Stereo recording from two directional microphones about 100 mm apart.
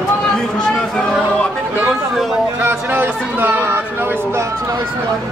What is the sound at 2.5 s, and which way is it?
Speech, 20° right (ahead or behind).